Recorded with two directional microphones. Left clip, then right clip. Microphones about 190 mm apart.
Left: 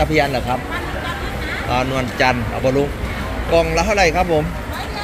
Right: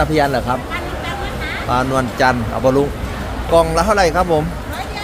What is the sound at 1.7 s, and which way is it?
Speech, 30° right (ahead or behind).